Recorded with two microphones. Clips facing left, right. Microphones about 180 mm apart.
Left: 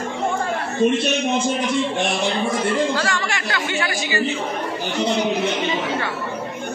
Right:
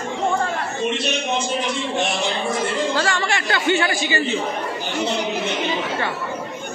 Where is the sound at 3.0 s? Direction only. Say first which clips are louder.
Right 2 dB; 30° right (ahead or behind).